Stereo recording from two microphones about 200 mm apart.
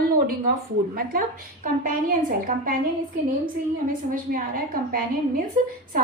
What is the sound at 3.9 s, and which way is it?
A woman's voice, 45° right (ahead or behind).